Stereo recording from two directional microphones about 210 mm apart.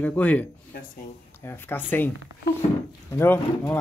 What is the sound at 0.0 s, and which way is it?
Speech, 5° left (ahead or behind).